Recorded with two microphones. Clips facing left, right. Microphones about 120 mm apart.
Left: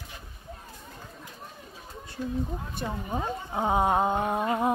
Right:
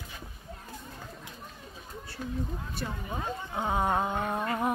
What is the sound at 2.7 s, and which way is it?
Speech, 20° left (ahead or behind).